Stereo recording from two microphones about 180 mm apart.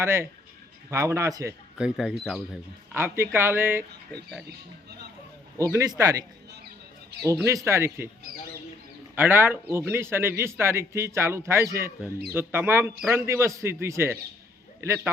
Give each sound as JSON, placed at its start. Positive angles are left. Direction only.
{"t": 0.0, "sound": "a man's voice", "side_deg": -15}
{"t": 1.8, "sound": "speech", "side_deg": 0}
{"t": 2.9, "sound": "a man's voice", "side_deg": -15}
{"t": 5.5, "sound": "speech", "side_deg": -15}
{"t": 7.4, "sound": "a man's voice", "side_deg": -15}
{"t": 9.1, "sound": "a man's voice", "side_deg": -10}